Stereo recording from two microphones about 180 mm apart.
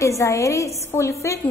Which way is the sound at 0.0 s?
15° left (ahead or behind).